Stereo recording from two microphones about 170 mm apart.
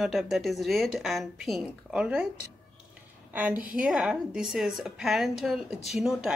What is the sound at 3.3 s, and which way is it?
A woman's voice, 10° right (ahead or behind).